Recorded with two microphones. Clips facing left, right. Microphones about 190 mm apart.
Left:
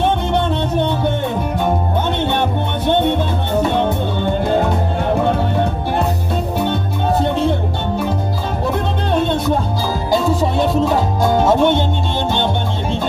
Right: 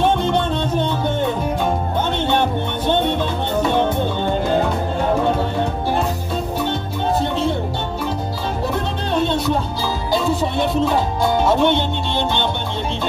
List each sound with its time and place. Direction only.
10.8 s music: 45° left (ahead or behind)